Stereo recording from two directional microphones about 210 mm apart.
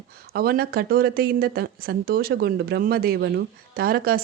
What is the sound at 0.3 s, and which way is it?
Speech, 45° right (ahead or behind).